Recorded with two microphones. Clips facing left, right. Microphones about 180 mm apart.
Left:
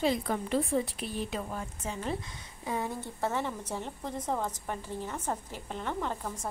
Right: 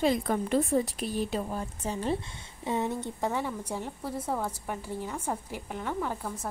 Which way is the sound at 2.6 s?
20° right (ahead or behind).